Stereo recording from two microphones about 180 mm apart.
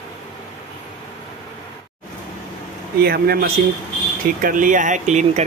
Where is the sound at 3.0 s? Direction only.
60° right (ahead or behind).